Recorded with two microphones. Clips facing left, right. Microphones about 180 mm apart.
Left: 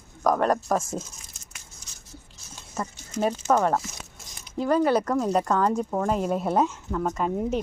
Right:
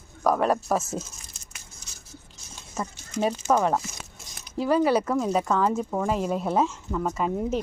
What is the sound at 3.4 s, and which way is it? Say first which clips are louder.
Speech: left 1 dB; 5° right (ahead or behind).